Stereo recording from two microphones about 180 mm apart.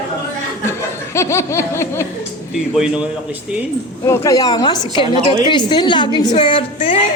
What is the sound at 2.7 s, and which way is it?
Speech, 5° right (ahead or behind).